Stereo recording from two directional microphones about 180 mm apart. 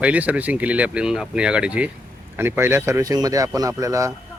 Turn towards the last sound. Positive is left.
turn(degrees=-15)  # may be behind; listen again after turning